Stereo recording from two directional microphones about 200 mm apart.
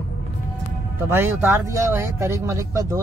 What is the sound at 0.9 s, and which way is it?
Speech, 10° right (ahead or behind).